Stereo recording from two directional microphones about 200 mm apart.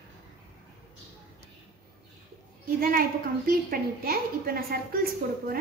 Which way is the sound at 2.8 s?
45° right (ahead or behind).